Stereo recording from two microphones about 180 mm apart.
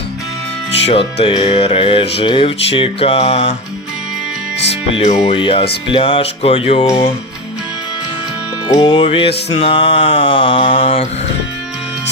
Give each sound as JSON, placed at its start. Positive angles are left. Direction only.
{"t": 0.9, "sound": "music", "side_deg": 30}
{"t": 5.2, "sound": "music", "side_deg": 30}
{"t": 5.9, "sound": "speech", "side_deg": 30}
{"t": 8.8, "sound": "music", "side_deg": 30}